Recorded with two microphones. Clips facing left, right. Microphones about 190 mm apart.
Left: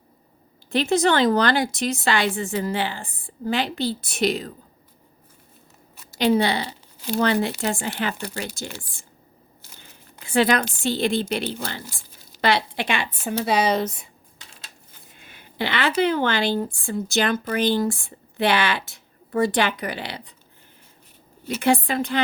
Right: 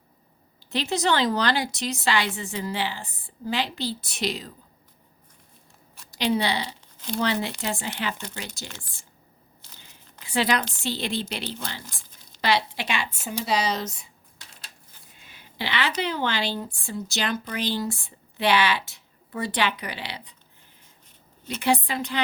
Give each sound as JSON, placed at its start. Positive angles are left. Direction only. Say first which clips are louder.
{"t": 0.7, "sound": "speech", "louder": "left 5 dB", "side_deg": 50}
{"t": 6.1, "sound": "speech", "louder": "left 5 dB", "side_deg": 50}
{"t": 9.8, "sound": "a sound", "louder": "left 4 dB", "side_deg": 50}
{"t": 10.8, "sound": "speech", "louder": "left 6 dB", "side_deg": 50}
{"t": 15.2, "sound": "a sound", "louder": "left 6 dB", "side_deg": 55}
{"t": 16.0, "sound": "speech", "louder": "left 6 dB", "side_deg": 50}
{"t": 21.6, "sound": "speech", "louder": "left 4 dB", "side_deg": 50}